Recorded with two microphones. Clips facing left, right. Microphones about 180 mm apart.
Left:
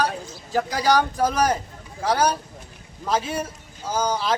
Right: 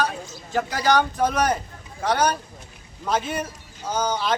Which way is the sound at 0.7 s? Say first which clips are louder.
Even; 10° left (ahead or behind).